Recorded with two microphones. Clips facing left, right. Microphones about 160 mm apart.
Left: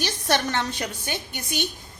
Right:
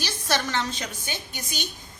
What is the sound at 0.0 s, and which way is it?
A woman's voice, 55° left (ahead or behind).